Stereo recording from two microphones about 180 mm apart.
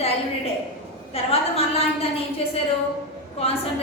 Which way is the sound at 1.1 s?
35° left (ahead or behind).